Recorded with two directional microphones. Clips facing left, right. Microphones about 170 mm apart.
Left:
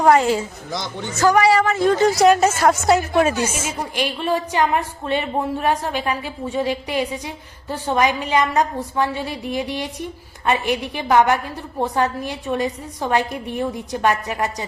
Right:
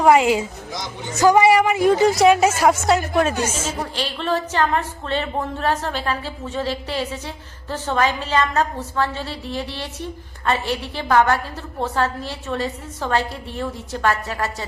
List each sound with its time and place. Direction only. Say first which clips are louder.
0.0 s a woman's voice: even; 5° right (ahead or behind)
3.8 s a woman's voice: left 2 dB; 15° left (ahead or behind)